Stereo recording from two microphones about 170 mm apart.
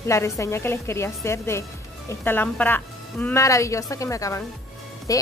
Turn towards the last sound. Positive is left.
turn(degrees=20)  # may be behind; listen again after turning